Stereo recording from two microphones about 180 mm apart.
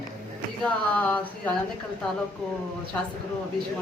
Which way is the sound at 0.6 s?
10° left (ahead or behind).